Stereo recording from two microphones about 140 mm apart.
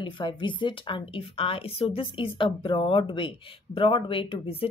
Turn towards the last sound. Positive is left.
turn(degrees=40)  # may be behind; listen again after turning